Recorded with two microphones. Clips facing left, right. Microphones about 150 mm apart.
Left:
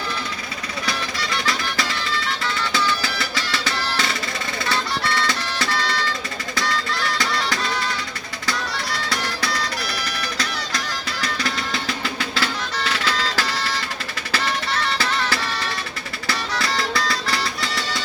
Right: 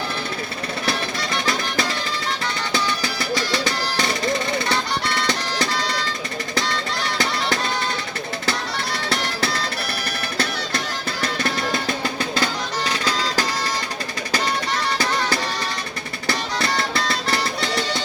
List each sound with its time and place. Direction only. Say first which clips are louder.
0.9 s music: right 2 dB; 25° right (ahead or behind)
11.4 s music: right 3 dB; 50° right (ahead or behind)
13.1 s music: right 2 dB; 20° right (ahead or behind)
14.8 s music: right 1 dB; 20° right (ahead or behind)